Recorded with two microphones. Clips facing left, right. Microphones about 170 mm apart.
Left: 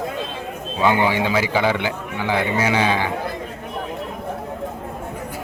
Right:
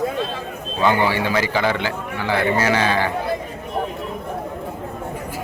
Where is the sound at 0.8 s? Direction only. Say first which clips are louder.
Even; 15° left (ahead or behind).